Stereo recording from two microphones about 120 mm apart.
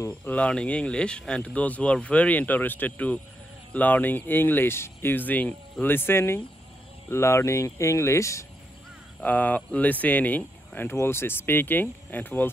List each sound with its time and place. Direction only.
0.2 s speech: 10° left (ahead or behind)
9.2 s speech: 15° left (ahead or behind)